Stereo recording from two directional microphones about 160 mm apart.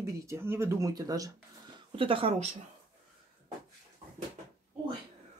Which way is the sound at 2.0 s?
35° right (ahead or behind).